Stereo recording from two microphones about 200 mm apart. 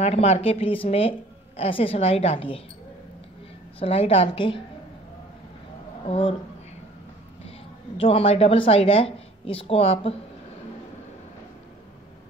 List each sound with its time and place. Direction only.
0.0 s a woman's voice: 30° left (ahead or behind)
3.8 s a woman's voice: 30° left (ahead or behind)
6.0 s a woman's voice: 30° left (ahead or behind)
8.0 s a woman's voice: 30° left (ahead or behind)